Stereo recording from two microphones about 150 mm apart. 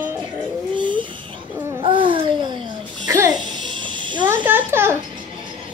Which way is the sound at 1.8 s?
35° right (ahead or behind).